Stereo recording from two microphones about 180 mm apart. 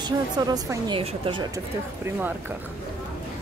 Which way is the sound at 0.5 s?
25° right (ahead or behind).